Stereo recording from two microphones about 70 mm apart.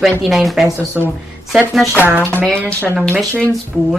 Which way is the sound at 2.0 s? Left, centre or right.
Right.